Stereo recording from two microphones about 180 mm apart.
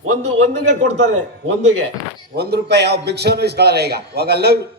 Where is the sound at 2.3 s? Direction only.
65° right (ahead or behind).